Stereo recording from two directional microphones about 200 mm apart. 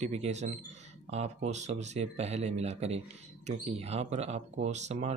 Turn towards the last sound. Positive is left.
turn(degrees=-35)  # may be behind; listen again after turning